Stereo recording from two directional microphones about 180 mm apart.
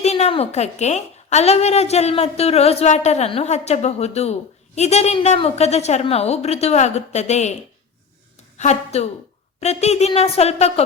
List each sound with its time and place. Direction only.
0.0 s a woman's voice: 35° left (ahead or behind)
8.5 s a woman's voice: 40° left (ahead or behind)